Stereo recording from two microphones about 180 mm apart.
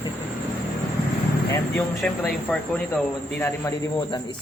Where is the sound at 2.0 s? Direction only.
10° left (ahead or behind).